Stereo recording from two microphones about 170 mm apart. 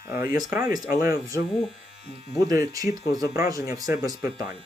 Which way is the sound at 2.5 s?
20° right (ahead or behind).